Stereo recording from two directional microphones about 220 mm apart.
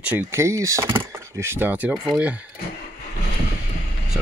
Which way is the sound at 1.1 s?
10° right (ahead or behind).